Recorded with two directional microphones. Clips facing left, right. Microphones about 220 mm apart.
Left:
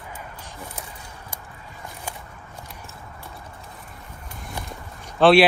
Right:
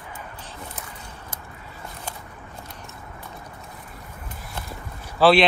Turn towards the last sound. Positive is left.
turn(degrees=0)  # may be behind; listen again after turning